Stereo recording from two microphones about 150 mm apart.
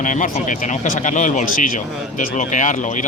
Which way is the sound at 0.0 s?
60° left (ahead or behind).